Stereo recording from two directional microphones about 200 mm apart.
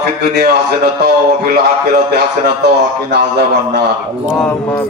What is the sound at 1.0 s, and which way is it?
Speech, 55° right (ahead or behind).